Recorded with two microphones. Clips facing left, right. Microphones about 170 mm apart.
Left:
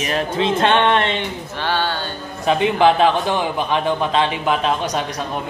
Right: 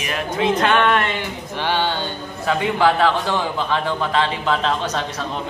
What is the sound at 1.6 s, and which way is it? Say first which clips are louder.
Speech: right 1 dB; 15° right (ahead or behind).